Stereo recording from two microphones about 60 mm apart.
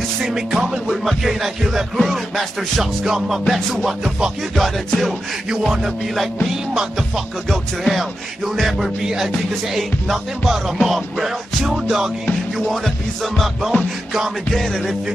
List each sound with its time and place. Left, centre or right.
0.2 s music: centre
4.6 s music: centre
14.6 s music: centre